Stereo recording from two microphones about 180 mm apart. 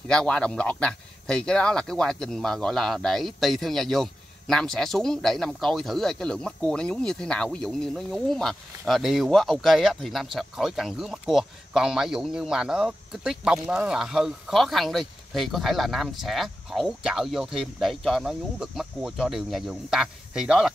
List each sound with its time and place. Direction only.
0.1 s speech: 5° left (ahead or behind)